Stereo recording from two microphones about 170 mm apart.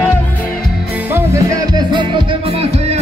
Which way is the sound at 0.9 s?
15° right (ahead or behind).